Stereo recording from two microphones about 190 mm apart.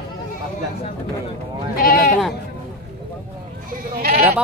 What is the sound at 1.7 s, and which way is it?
Speech, 50° left (ahead or behind).